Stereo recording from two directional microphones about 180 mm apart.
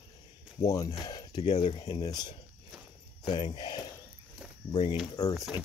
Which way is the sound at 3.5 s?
25° left (ahead or behind).